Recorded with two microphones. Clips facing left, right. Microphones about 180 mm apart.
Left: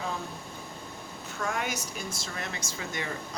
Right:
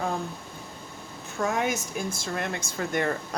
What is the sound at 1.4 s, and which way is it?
Speech, 50° right (ahead or behind).